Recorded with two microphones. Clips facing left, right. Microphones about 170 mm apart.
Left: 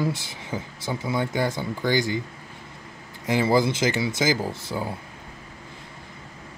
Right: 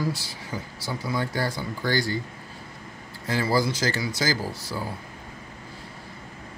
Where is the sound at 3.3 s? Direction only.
20° left (ahead or behind).